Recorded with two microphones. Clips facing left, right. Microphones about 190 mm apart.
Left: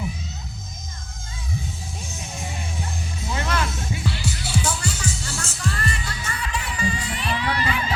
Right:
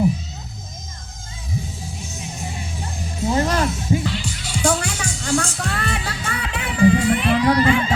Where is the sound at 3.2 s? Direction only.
45° right (ahead or behind).